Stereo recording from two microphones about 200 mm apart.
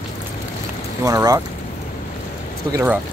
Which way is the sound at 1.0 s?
15° right (ahead or behind).